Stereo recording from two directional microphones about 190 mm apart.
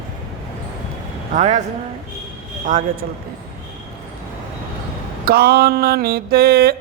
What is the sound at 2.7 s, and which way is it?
Mantra, 40° right (ahead or behind).